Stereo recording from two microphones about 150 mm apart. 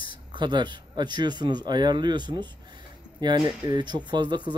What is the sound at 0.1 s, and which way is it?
Speech, 30° right (ahead or behind).